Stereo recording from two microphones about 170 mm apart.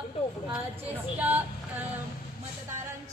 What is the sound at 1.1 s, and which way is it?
Vehicle, 10° right (ahead or behind).